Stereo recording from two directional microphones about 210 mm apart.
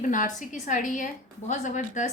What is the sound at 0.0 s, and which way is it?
A woman's voice, 35° left (ahead or behind).